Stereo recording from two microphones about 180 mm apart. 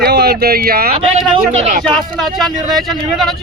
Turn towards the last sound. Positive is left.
turn(degrees=0)  # may be behind; listen again after turning